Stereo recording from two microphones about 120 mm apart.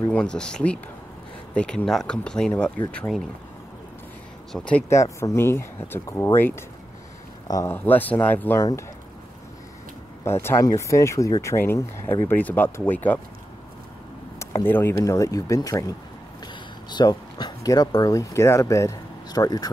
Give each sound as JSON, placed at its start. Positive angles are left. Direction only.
{"t": 0.1, "sound": "speech", "side_deg": 10}
{"t": 4.5, "sound": "speech", "side_deg": 5}
{"t": 4.8, "sound": "speech", "side_deg": 25}
{"t": 7.4, "sound": "speech", "side_deg": 30}
{"t": 7.7, "sound": "speech", "side_deg": 15}
{"t": 10.2, "sound": "speech", "side_deg": 20}
{"t": 14.4, "sound": "speech", "side_deg": 20}
{"t": 16.9, "sound": "speech", "side_deg": 35}